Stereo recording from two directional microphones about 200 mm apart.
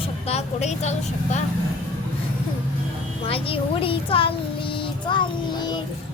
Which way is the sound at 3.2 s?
30° left (ahead or behind).